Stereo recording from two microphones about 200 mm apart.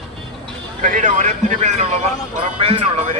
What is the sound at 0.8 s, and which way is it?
Speech, 40° right (ahead or behind).